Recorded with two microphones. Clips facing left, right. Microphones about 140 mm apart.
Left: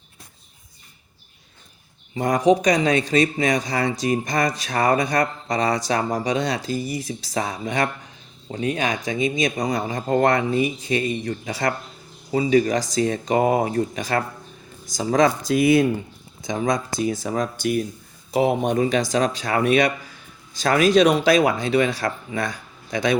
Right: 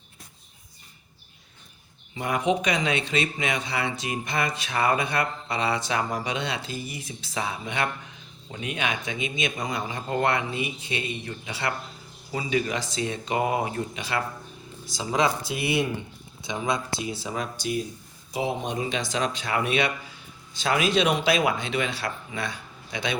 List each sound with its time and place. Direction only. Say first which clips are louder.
2.1 s speech: left 7 dB; 40° left (ahead or behind)
18.3 s speech: left 8 dB; 60° left (ahead or behind); by 23.1 s 40° left (ahead or behind)